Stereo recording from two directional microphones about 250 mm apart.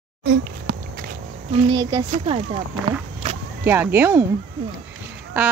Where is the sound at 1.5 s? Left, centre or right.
Centre.